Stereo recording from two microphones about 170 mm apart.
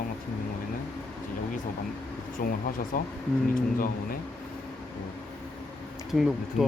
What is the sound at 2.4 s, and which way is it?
Speech, 55° left (ahead or behind).